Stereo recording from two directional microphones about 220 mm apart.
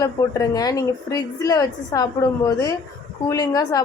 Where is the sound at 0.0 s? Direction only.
15° left (ahead or behind).